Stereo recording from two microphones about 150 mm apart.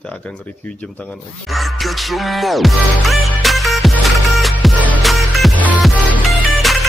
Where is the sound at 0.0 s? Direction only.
5° left (ahead or behind).